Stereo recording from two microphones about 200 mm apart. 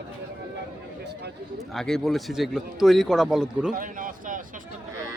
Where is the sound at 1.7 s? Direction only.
Centre (ahead or behind).